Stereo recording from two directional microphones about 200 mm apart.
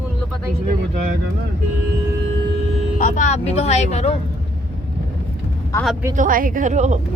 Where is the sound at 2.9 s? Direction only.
40° left (ahead or behind).